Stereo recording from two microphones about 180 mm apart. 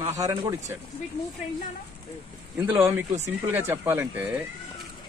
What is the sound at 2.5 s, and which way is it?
Speech, 10° right (ahead or behind).